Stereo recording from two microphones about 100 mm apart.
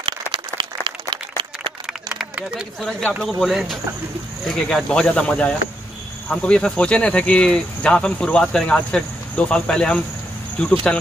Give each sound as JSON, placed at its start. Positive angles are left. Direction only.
{"t": 0.0, "sound": "applause", "side_deg": -55}
{"t": 2.8, "sound": "speech", "side_deg": 5}